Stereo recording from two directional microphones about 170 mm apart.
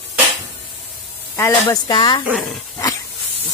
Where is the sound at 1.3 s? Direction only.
20° left (ahead or behind).